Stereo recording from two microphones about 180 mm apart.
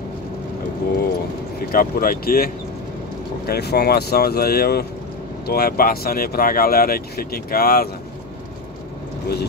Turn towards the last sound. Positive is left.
turn(degrees=55)  # may be behind; listen again after turning